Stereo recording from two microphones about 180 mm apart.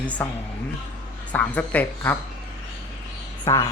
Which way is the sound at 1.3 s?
10° left (ahead or behind).